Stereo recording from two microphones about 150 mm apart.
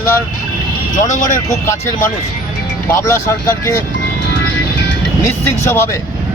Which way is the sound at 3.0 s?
20° left (ahead or behind).